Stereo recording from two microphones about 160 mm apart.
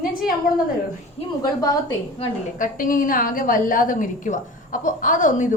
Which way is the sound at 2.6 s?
60° left (ahead or behind).